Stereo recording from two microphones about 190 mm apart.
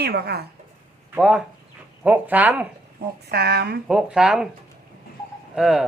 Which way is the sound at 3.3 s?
60° right (ahead or behind).